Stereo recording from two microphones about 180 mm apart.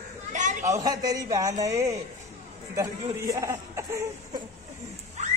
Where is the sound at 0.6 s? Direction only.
20° right (ahead or behind).